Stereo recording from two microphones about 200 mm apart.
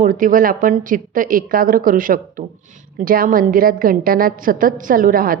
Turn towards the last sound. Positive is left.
turn(degrees=-45)  # may be behind; listen again after turning